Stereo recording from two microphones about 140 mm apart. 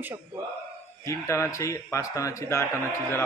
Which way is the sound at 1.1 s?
20° left (ahead or behind).